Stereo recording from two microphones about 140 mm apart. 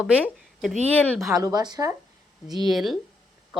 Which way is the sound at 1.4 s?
30° right (ahead or behind).